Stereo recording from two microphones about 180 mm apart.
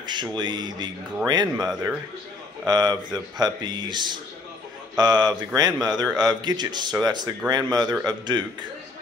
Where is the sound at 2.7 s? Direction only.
20° right (ahead or behind).